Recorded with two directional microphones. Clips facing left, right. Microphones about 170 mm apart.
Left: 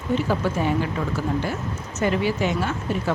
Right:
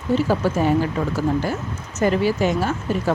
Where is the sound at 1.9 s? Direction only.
40° right (ahead or behind).